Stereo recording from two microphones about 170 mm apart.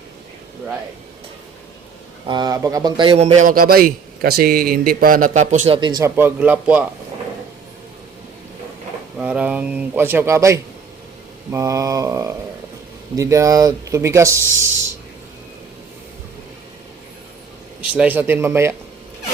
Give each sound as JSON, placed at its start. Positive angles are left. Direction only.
{"t": 2.2, "sound": "a man's voice", "side_deg": -25}
{"t": 9.1, "sound": "speech", "side_deg": -5}
{"t": 17.9, "sound": "speech", "side_deg": -10}